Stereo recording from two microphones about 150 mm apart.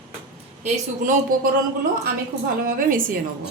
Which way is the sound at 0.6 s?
60° right (ahead or behind).